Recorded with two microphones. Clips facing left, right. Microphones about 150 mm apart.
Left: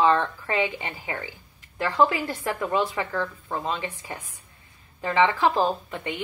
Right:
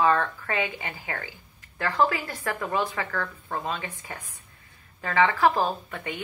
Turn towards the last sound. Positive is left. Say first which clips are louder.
# left 3 dB
turn(degrees=25)  # may be behind; listen again after turning